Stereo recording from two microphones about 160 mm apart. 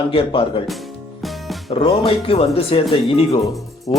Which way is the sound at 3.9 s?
30° left (ahead or behind).